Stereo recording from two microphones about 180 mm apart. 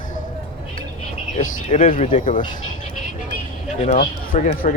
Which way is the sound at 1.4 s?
45° left (ahead or behind).